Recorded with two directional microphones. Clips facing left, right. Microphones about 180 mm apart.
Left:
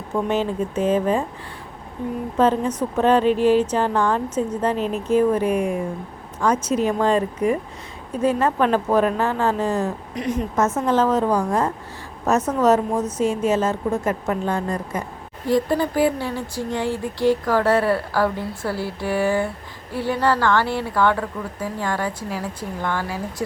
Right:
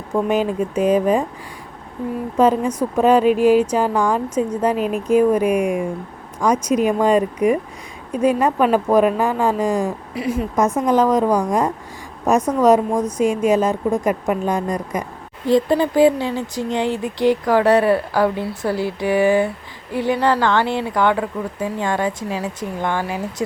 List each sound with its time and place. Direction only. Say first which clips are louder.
0.1 s speech: right 3 dB; 15° right (ahead or behind)
2.4 s a woman's voice: right 3 dB; 10° right (ahead or behind)